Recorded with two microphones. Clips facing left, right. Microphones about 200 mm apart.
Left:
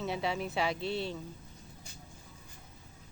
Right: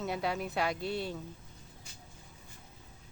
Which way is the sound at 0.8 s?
50° right (ahead or behind).